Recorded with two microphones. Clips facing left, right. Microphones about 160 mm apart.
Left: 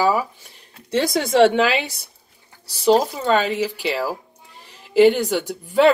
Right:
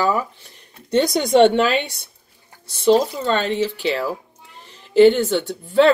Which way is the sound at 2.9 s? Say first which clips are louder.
Even; 5° left (ahead or behind).